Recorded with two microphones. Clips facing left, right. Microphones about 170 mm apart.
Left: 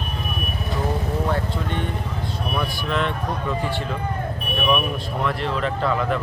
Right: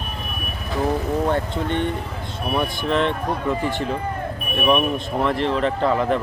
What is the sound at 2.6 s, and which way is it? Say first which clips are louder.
Speech: right 4 dB; 25° right (ahead or behind).